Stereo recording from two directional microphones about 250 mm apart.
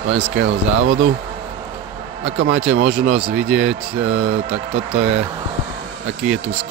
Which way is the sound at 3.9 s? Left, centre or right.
Right.